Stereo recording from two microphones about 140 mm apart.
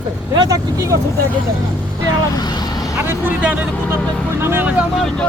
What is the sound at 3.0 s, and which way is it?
Speech, 15° right (ahead or behind).